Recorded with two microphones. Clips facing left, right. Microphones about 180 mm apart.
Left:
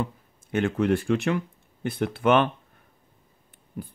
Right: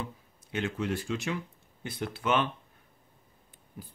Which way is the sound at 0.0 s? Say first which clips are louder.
Left 9 dB; 50° left (ahead or behind).